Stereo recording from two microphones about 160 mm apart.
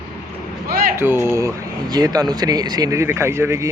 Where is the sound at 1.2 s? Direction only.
15° right (ahead or behind).